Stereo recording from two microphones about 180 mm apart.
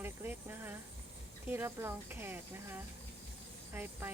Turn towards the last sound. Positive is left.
turn(degrees=-10)  # may be behind; listen again after turning